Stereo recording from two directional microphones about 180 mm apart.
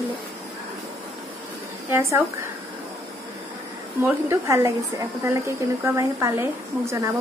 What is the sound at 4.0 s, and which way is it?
Speech, 15° right (ahead or behind).